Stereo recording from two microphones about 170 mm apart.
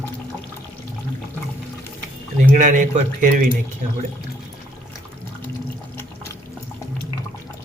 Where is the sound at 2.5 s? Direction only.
50° right (ahead or behind).